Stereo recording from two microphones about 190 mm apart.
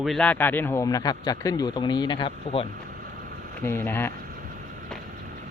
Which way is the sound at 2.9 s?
45° right (ahead or behind).